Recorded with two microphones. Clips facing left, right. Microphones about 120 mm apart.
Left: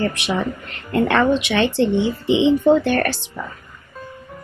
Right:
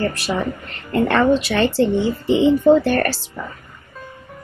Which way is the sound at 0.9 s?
Centre (ahead or behind).